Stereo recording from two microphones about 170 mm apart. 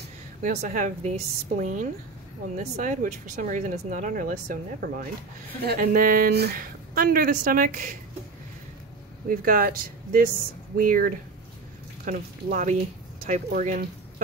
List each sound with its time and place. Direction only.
0.4 s speech: 50° right (ahead or behind)
5.6 s a woman's voice: 65° right (ahead or behind)
9.3 s a woman's voice: 60° right (ahead or behind)